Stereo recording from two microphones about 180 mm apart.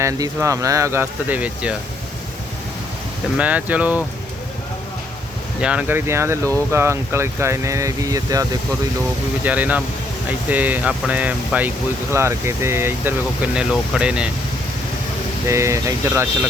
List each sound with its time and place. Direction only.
0.0 s speech: 15° right (ahead or behind)
3.3 s speech: 10° right (ahead or behind)
5.5 s speech: 5° right (ahead or behind)
9.4 s speech: 10° right (ahead or behind)
15.4 s speech: 15° right (ahead or behind)